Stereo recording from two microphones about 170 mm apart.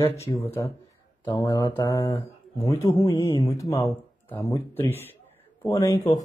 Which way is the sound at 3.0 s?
20° left (ahead or behind).